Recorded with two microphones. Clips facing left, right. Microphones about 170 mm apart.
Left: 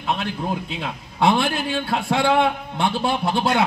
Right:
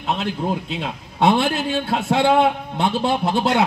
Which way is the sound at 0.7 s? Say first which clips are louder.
Right 2 dB; 20° right (ahead or behind).